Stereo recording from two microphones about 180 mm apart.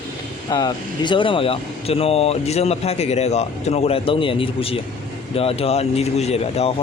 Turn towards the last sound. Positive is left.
turn(degrees=35)  # may be behind; listen again after turning